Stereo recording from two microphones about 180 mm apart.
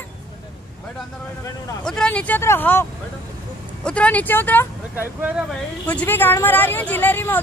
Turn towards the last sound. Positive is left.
turn(degrees=10)  # may be behind; listen again after turning